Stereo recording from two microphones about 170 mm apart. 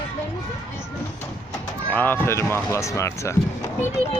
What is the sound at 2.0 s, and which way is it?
Speech, 10° left (ahead or behind).